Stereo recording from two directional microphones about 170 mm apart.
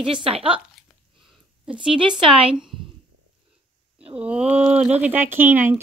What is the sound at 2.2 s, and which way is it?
Speech, 30° right (ahead or behind).